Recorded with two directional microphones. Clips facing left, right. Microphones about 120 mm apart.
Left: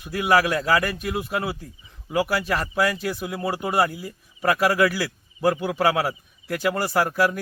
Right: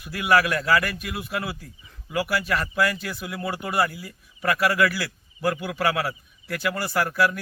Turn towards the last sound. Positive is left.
turn(degrees=35)  # may be behind; listen again after turning